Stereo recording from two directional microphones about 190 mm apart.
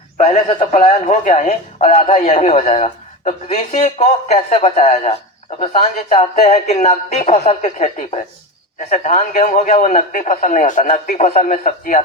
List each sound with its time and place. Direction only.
0.2 s speech: 35° left (ahead or behind)